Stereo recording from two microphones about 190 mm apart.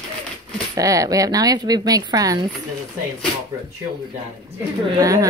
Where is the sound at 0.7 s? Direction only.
20° right (ahead or behind).